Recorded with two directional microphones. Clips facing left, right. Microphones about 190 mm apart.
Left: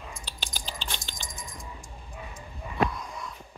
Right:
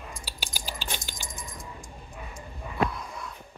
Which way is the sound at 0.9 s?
5° right (ahead or behind).